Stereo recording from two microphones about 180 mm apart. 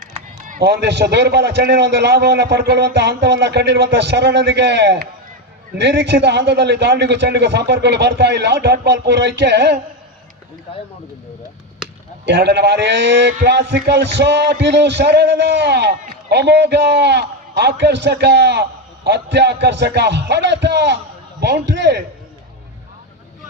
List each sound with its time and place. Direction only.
0.1 s a sound: 45° right (ahead or behind)
0.6 s a man's voice: 65° right (ahead or behind)
12.2 s a man's voice: 70° right (ahead or behind)